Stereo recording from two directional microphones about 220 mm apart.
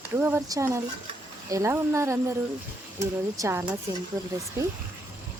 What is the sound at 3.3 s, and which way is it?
Speech, 15° right (ahead or behind).